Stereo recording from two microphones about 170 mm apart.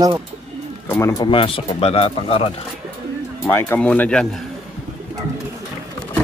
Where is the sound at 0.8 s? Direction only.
15° left (ahead or behind).